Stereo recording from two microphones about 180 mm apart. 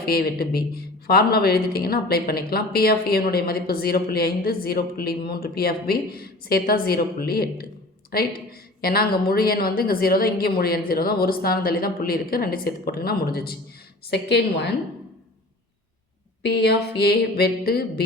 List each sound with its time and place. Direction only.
0.0 s a woman's voice: 60° left (ahead or behind)
16.4 s speech: 65° left (ahead or behind)